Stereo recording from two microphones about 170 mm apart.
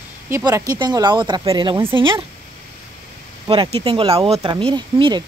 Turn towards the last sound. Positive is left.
turn(degrees=-25)  # may be behind; listen again after turning